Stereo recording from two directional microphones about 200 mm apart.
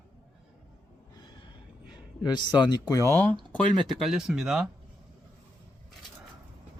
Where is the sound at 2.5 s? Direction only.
20° left (ahead or behind).